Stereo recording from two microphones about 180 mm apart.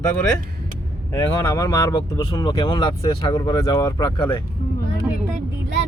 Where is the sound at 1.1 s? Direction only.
15° left (ahead or behind).